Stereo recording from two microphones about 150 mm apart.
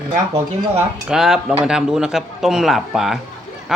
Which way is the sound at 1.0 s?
5° right (ahead or behind).